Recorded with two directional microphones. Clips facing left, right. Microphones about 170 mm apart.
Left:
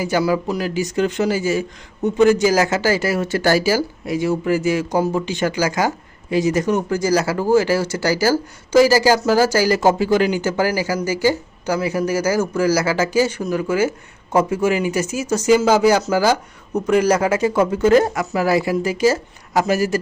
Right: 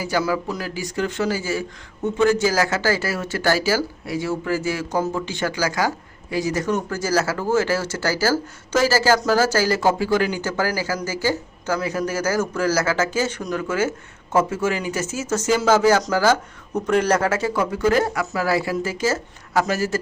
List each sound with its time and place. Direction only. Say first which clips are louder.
0.0 s speech: left 4 dB; 20° left (ahead or behind)